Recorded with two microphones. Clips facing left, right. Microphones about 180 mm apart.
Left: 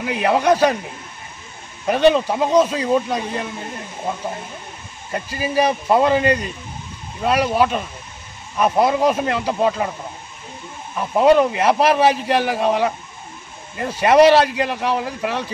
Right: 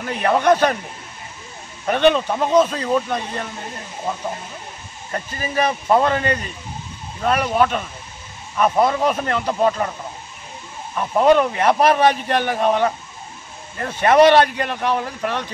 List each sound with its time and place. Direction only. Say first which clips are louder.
0.0 s speech: even; 5° left (ahead or behind)
1.9 s speech: left 1 dB; 5° left (ahead or behind)
5.1 s speech: left 3 dB; 10° left (ahead or behind)
11.1 s speech: left 1 dB; 5° left (ahead or behind)